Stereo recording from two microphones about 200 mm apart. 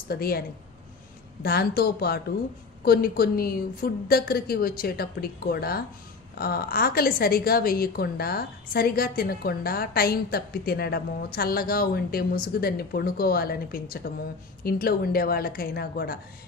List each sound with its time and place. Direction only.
0.1 s a woman's voice: 50° left (ahead or behind)
1.4 s a woman's voice: 50° left (ahead or behind)